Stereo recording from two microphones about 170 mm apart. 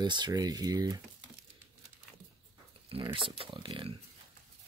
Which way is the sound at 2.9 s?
30° right (ahead or behind).